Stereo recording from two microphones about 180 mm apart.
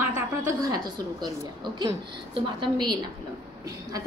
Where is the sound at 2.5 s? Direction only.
25° right (ahead or behind).